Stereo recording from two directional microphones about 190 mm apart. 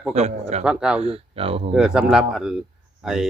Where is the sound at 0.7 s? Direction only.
5° right (ahead or behind).